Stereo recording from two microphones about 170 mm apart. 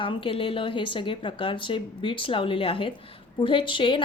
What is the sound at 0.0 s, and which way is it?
A woman's voice, 30° left (ahead or behind).